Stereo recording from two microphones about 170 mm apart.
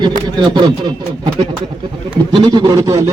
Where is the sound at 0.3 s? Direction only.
25° right (ahead or behind).